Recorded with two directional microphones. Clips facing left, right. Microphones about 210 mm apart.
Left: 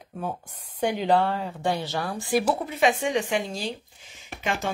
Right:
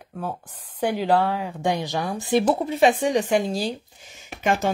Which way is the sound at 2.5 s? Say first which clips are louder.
Right 4 dB; 30° right (ahead or behind).